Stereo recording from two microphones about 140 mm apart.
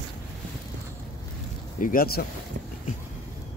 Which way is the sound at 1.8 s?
80° left.